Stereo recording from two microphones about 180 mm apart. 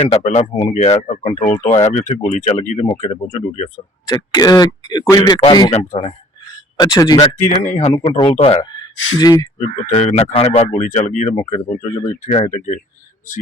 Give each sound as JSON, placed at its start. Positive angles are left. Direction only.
{"t": 0.0, "sound": "speech", "side_deg": 40}
{"t": 4.0, "sound": "speech", "side_deg": 20}
{"t": 5.7, "sound": "speech", "side_deg": 35}
{"t": 6.7, "sound": "speech", "side_deg": 20}
{"t": 7.3, "sound": "speech", "side_deg": 45}
{"t": 9.6, "sound": "speech", "side_deg": 45}